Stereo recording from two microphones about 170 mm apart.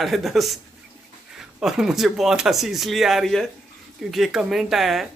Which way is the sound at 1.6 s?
5° right (ahead or behind).